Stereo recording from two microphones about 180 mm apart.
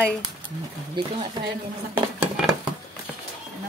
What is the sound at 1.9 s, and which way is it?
Dishes, 10° right (ahead or behind).